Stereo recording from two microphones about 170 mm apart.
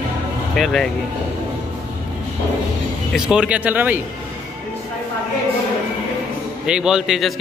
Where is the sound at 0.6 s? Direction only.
Centre (ahead or behind).